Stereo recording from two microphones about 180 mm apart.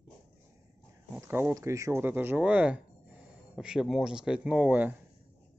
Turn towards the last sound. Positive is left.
turn(degrees=-10)  # may be behind; listen again after turning